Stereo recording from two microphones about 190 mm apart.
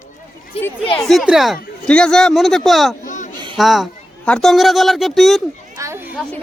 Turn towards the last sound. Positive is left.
turn(degrees=-15)  # may be behind; listen again after turning